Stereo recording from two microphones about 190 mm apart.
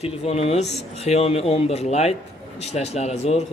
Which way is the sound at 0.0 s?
35° left (ahead or behind).